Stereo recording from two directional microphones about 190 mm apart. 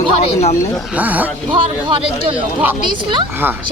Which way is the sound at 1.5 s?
25° right (ahead or behind).